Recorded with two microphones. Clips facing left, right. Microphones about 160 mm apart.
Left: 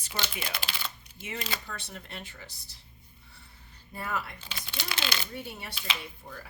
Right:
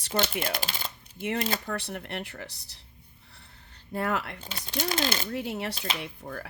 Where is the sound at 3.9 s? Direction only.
70° right (ahead or behind).